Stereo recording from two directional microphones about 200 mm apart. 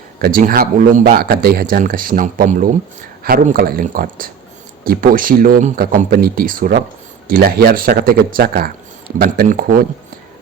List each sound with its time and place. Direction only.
0.2 s speech: 45° right (ahead or behind)